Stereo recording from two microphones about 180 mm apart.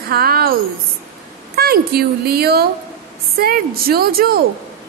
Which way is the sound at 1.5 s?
60° right (ahead or behind).